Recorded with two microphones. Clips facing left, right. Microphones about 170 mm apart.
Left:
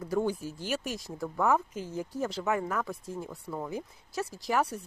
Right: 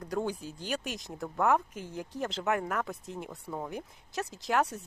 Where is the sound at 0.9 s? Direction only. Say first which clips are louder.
Left 2 dB; 20° right (ahead or behind).